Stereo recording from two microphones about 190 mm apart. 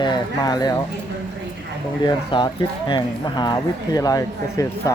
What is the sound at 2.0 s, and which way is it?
Speech, 25° left (ahead or behind).